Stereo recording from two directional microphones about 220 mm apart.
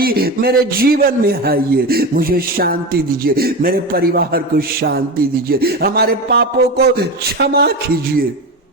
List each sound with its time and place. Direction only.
0.0 s a man's voice: 45° right (ahead or behind)